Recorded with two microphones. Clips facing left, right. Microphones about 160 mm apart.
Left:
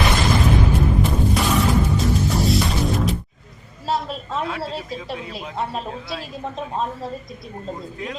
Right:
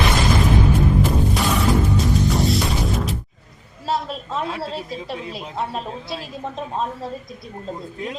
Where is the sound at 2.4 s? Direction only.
Centre (ahead or behind).